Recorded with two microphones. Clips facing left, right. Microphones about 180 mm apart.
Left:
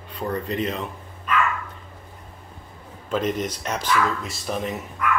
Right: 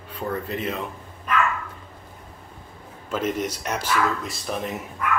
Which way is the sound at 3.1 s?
5° right (ahead or behind).